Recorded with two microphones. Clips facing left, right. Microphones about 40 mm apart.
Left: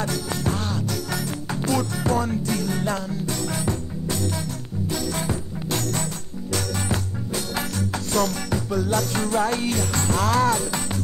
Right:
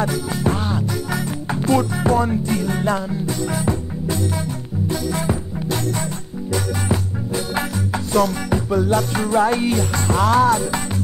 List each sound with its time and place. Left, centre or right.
0.0 s music: centre
5.2 s music: centre
8.1 s music: centre